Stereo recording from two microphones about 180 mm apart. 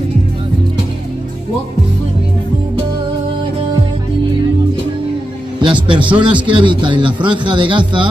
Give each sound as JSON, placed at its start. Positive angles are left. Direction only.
{"t": 5.6, "sound": "music", "side_deg": -25}
{"t": 6.4, "sound": "speech", "side_deg": -25}